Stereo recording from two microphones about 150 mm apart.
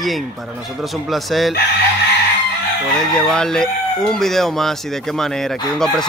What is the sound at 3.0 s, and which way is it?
Speech, 5° left (ahead or behind).